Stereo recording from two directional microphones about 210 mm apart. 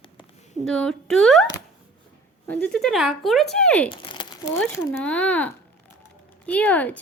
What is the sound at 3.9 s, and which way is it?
Crumpling, 20° left (ahead or behind).